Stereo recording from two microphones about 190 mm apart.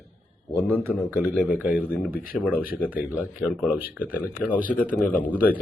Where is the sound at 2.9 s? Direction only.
10° right (ahead or behind).